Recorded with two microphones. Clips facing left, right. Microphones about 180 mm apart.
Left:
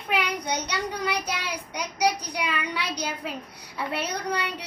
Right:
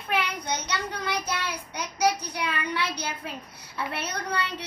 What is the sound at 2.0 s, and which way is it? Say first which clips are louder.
A child's voice: even; 15° left (ahead or behind).